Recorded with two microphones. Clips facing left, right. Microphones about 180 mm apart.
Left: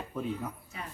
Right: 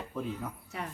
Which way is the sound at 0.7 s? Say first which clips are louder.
Right 4 dB; 70° right (ahead or behind).